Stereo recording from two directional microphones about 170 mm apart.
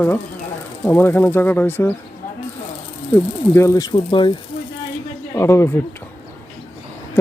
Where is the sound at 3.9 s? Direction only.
30° left (ahead or behind).